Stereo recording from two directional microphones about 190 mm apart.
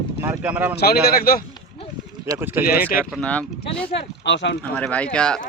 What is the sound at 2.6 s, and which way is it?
Speech, 50° left (ahead or behind).